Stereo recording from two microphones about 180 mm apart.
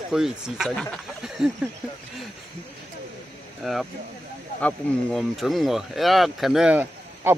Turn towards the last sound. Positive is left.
turn(degrees=-10)  # may be behind; listen again after turning